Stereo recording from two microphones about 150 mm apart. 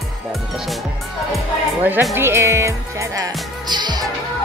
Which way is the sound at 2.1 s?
15° right (ahead or behind).